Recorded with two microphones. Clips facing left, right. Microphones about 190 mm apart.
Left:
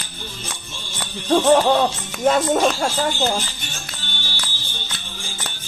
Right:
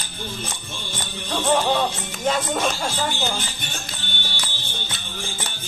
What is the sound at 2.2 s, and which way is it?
Speech, 55° left (ahead or behind).